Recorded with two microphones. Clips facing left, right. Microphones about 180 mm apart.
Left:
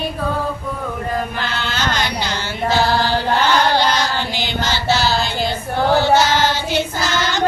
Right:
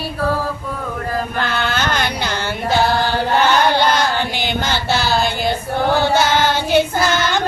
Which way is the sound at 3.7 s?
55° right (ahead or behind).